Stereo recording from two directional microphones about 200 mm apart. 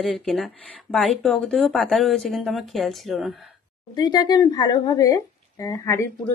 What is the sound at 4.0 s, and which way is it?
Speech, 20° left (ahead or behind).